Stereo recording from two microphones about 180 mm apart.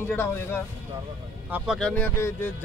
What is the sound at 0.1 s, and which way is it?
Speech, 10° left (ahead or behind).